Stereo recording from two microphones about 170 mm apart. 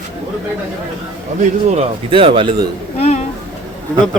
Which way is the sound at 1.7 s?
35° right (ahead or behind).